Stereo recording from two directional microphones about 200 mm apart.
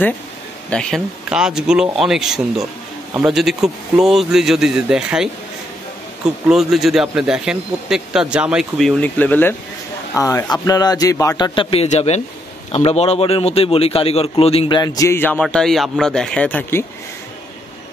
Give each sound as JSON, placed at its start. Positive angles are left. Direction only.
{"t": 0.7, "sound": "speech", "side_deg": 5}
{"t": 6.4, "sound": "speech", "side_deg": 0}